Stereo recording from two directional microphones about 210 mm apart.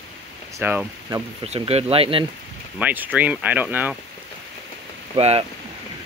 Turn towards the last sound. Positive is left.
turn(degrees=-30)  # may be behind; listen again after turning